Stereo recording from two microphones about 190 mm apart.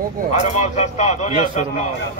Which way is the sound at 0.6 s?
35° left (ahead or behind).